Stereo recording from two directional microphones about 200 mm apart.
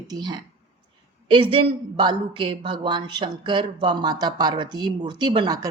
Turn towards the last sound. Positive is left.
turn(degrees=-20)  # may be behind; listen again after turning